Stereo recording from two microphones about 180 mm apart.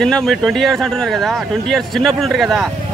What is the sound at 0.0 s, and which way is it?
Speech, centre (ahead or behind).